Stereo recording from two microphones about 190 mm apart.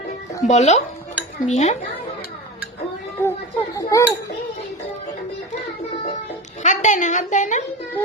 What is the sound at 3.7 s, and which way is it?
Speech, 15° left (ahead or behind).